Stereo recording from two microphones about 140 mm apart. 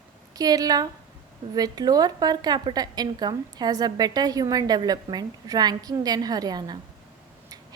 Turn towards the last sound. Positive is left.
turn(degrees=-30)  # may be behind; listen again after turning